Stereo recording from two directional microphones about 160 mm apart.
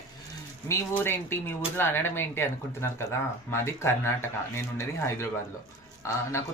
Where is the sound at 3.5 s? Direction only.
15° left (ahead or behind).